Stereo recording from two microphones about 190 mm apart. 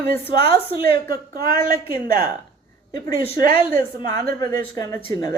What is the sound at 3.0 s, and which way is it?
Speech, 25° left (ahead or behind).